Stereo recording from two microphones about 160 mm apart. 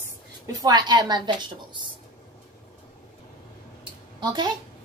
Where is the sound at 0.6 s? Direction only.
25° right (ahead or behind).